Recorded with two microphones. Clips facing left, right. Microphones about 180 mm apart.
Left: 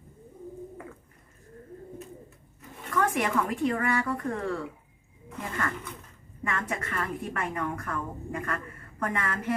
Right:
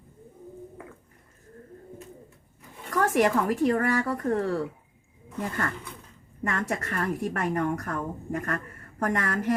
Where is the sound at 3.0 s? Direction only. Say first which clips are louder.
Right 5 dB; 40° right (ahead or behind).